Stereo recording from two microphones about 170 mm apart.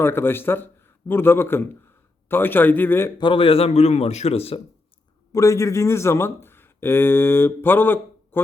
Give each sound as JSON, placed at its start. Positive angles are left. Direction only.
{"t": 0.0, "sound": "a man's voice", "side_deg": 15}
{"t": 3.2, "sound": "a man's voice", "side_deg": 30}
{"t": 5.3, "sound": "speech", "side_deg": 20}